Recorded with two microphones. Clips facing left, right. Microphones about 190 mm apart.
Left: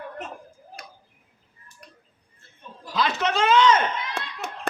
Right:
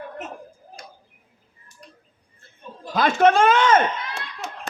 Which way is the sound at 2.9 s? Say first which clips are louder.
Right 8 dB; 50° right (ahead or behind).